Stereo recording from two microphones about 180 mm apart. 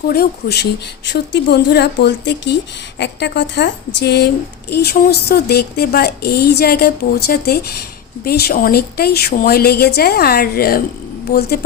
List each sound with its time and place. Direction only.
0.1 s speech: 60° left (ahead or behind)